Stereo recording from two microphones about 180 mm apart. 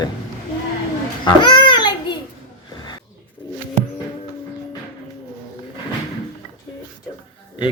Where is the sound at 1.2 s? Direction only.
25° left (ahead or behind).